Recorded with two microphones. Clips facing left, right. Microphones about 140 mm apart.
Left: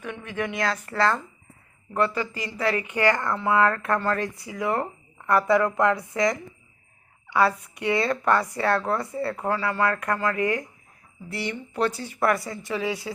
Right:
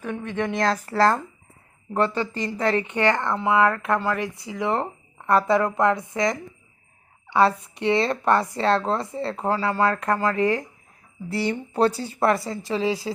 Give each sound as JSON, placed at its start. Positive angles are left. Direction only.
{"t": 0.2, "sound": "speech", "side_deg": -25}
{"t": 0.5, "sound": "a woman's voice", "side_deg": -35}